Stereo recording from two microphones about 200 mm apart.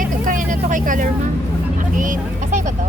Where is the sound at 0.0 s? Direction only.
40° right (ahead or behind).